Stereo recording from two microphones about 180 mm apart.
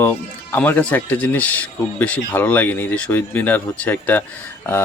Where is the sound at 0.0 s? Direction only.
10° left (ahead or behind).